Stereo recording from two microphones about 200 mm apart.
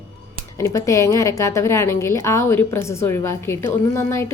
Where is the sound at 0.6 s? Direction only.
15° left (ahead or behind).